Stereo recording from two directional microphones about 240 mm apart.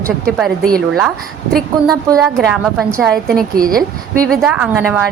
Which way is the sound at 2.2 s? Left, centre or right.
Centre.